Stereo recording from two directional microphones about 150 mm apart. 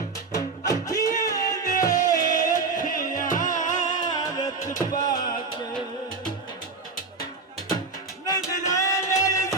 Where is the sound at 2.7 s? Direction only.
60° left (ahead or behind).